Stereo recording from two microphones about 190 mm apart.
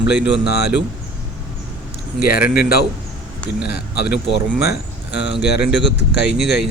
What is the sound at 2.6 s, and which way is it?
Speech, 55° left (ahead or behind).